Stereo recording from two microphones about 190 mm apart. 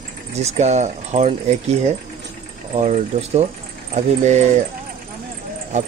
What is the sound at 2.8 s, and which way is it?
Speech, 35° right (ahead or behind).